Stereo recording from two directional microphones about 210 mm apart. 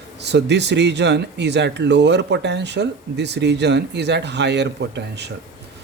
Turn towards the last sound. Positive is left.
turn(degrees=-55)  # may be behind; listen again after turning